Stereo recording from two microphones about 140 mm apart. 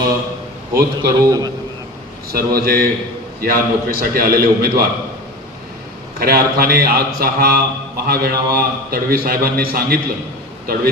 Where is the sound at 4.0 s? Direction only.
90° right.